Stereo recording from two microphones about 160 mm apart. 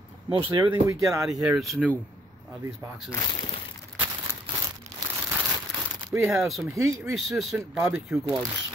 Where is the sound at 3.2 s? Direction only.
35° left (ahead or behind).